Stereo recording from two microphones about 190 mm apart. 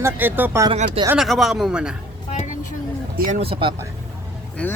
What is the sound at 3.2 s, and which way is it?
Speech, 40° right (ahead or behind).